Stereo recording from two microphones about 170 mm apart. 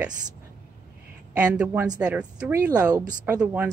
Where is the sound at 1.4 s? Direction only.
10° right (ahead or behind).